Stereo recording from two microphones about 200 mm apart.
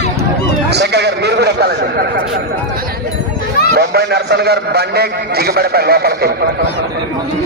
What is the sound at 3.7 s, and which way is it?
A man's voice, 55° right (ahead or behind).